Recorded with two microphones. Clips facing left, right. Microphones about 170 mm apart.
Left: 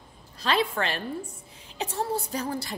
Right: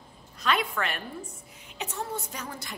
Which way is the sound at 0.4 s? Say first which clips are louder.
Left 2 dB; 30° left (ahead or behind).